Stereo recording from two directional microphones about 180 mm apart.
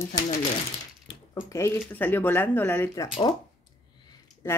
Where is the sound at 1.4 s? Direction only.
15° left (ahead or behind).